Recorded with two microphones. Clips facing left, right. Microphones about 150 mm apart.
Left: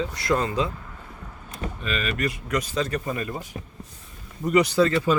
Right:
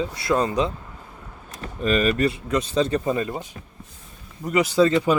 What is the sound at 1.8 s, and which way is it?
Speech, 40° right (ahead or behind).